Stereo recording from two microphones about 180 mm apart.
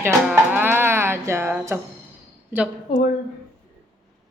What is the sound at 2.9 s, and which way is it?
Speech, 25° left (ahead or behind).